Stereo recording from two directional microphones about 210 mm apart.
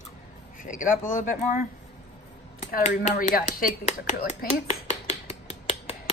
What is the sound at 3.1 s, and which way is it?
A woman's voice, 40° left (ahead or behind).